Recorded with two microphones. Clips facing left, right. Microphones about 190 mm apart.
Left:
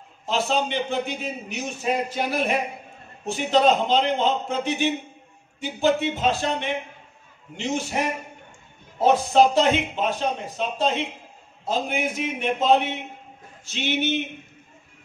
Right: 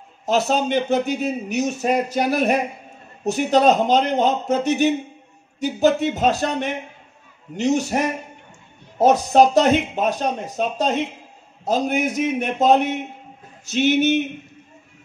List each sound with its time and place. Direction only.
0.2 s a man's voice: 40° right (ahead or behind)